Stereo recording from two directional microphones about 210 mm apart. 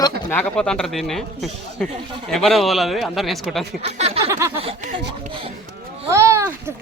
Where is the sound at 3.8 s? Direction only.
30° right (ahead or behind).